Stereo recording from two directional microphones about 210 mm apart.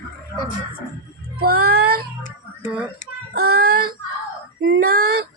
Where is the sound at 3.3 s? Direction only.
50° right (ahead or behind).